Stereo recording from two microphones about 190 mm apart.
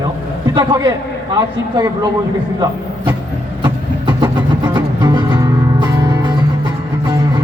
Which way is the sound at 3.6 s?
25° right (ahead or behind).